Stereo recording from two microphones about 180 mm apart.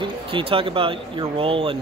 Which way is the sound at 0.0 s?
30° right (ahead or behind).